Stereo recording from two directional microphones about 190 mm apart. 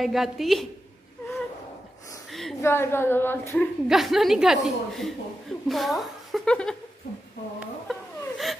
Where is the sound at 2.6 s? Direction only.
10° left (ahead or behind).